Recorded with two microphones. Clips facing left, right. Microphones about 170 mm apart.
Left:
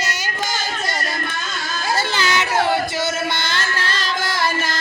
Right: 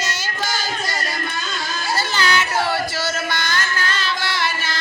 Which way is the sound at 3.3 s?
25° left (ahead or behind).